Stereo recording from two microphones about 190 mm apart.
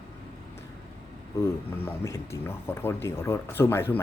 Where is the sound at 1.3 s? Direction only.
15° left (ahead or behind).